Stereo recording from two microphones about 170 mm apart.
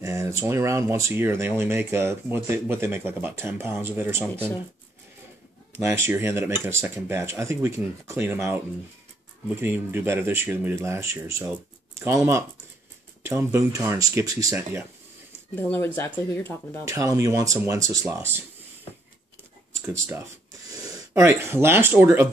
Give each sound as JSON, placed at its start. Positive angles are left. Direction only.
{"t": 0.0, "sound": "speech", "side_deg": -15}
{"t": 5.7, "sound": "speech", "side_deg": -15}
{"t": 15.5, "sound": "speech", "side_deg": 10}
{"t": 16.8, "sound": "speech", "side_deg": -20}
{"t": 19.7, "sound": "speech", "side_deg": -15}